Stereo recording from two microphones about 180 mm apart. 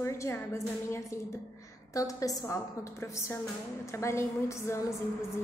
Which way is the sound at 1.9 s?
20° left (ahead or behind).